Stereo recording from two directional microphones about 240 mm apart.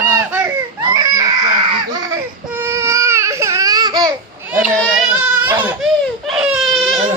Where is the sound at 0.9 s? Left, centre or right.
Centre.